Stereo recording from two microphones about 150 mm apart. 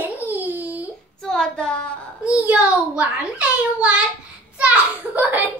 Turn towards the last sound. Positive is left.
turn(degrees=-10)  # may be behind; listen again after turning